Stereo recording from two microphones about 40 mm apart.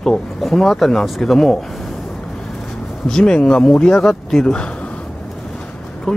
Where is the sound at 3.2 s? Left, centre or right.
Left.